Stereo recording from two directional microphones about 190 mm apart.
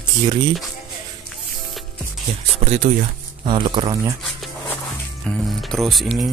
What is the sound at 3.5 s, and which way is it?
Speech, 25° right (ahead or behind).